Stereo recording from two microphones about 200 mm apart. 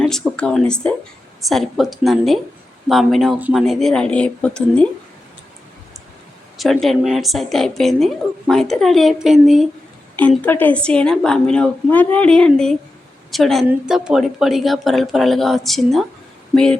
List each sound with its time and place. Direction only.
0.0 s a woman's voice: 5° left (ahead or behind)
6.6 s a woman's voice: centre (ahead or behind)
10.2 s a woman's voice: 10° left (ahead or behind)